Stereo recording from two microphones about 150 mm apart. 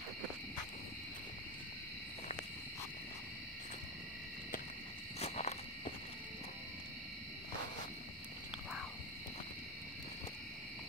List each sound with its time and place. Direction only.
5.2 s cricket: 50° left (ahead or behind)